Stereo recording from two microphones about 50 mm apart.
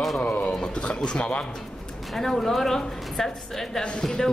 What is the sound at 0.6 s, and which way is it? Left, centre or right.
Pigeon, centre.